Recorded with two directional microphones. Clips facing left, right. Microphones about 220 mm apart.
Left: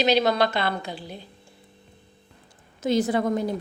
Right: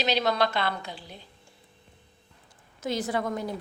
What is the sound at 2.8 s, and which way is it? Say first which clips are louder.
Speech: left 7 dB; 20° left (ahead or behind).